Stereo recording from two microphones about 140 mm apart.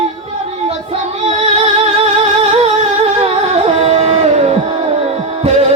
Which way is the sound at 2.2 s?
45° right (ahead or behind).